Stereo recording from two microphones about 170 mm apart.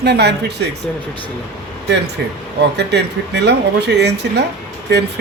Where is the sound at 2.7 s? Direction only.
85° right.